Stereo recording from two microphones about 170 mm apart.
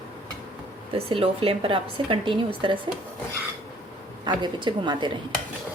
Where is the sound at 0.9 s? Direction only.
35° right (ahead or behind).